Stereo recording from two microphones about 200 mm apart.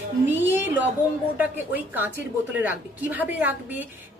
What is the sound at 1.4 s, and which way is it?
A woman's voice, 10° right (ahead or behind).